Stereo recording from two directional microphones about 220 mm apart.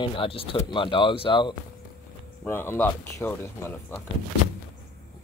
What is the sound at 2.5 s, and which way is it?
Speech, 10° left (ahead or behind).